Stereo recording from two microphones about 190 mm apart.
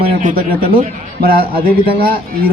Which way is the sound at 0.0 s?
45° right (ahead or behind).